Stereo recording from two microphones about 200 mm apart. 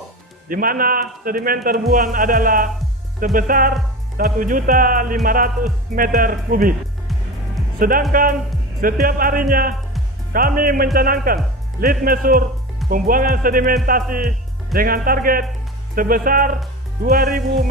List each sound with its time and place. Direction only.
0.5 s a man's voice: 45° right (ahead or behind)
8.1 s a man's voice: 45° right (ahead or behind)